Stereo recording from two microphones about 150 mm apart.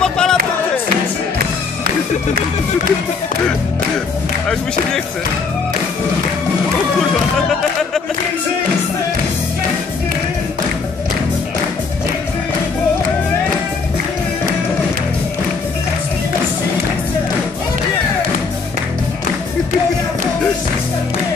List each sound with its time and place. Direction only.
0.0 s music: 5° left (ahead or behind)